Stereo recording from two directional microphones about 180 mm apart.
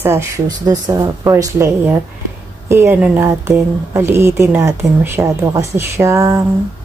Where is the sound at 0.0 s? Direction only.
15° right (ahead or behind).